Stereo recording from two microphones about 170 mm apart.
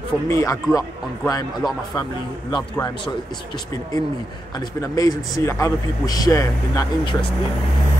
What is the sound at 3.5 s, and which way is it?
Speech, 20° left (ahead or behind).